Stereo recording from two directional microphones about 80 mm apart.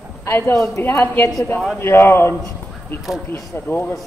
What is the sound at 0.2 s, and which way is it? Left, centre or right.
A man's voice, left.